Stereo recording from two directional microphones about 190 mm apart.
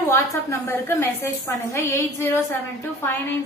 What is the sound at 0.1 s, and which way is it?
A woman's voice, 15° left (ahead or behind).